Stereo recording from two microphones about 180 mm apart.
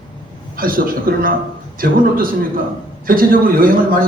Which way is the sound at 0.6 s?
55° right (ahead or behind).